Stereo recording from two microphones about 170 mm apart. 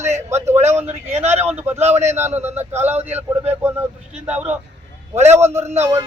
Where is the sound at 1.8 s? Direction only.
40° right (ahead or behind).